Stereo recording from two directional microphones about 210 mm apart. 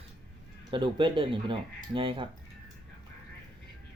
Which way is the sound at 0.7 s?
20° right (ahead or behind).